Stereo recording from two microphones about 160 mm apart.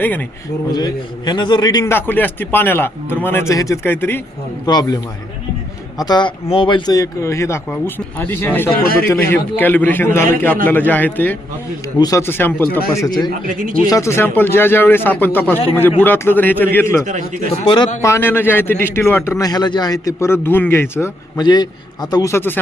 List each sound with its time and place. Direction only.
0.0 s a man's voice: 10° left (ahead or behind)
0.7 s a man's voice: 25° left (ahead or behind)
1.8 s a man's voice: 15° left (ahead or behind)
4.6 s a man's voice: 25° left (ahead or behind)
6.0 s a man's voice: 25° left (ahead or behind); by 11.3 s 10° left (ahead or behind)
11.9 s a man's voice: 20° left (ahead or behind)
13.5 s speech: 60° right (ahead or behind)
13.9 s a man's voice: 15° left (ahead or behind)
17.5 s speech: 30° left (ahead or behind)
18.0 s a man's voice: 15° left (ahead or behind)
21.3 s a man's voice: 25° left (ahead or behind)